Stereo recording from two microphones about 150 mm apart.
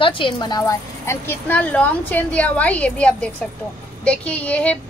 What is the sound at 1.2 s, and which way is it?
Speech, 10° left (ahead or behind).